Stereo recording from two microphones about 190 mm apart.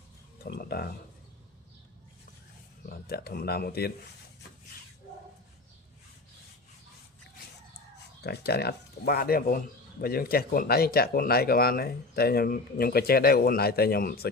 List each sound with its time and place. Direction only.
0.4 s a sound: 55° left (ahead or behind)
3.1 s speech: 55° left (ahead or behind)
8.2 s speech: 60° left (ahead or behind)